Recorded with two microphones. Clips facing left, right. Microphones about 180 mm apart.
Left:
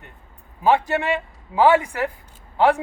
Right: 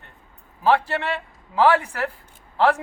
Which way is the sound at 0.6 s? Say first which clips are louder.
Left 2 dB; 15° left (ahead or behind).